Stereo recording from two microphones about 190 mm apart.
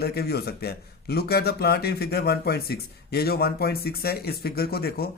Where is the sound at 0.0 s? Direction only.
55° left (ahead or behind).